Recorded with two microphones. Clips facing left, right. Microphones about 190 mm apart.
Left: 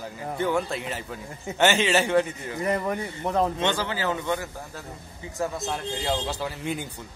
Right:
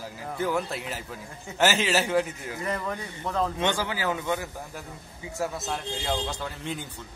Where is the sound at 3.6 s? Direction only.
15° right (ahead or behind).